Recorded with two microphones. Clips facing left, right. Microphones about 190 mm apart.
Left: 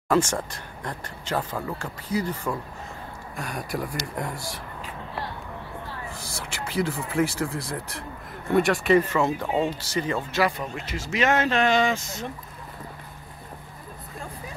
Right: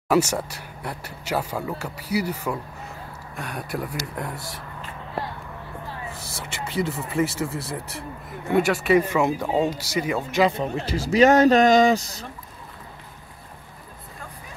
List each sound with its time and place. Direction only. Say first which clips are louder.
0.1 s speech: right 2 dB; 10° right (ahead or behind)
6.1 s speech: right 1 dB; centre (ahead or behind); by 12.3 s 35° right (ahead or behind)